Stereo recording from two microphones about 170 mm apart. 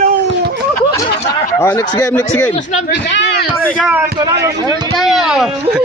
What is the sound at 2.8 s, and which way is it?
Speech, 85° left.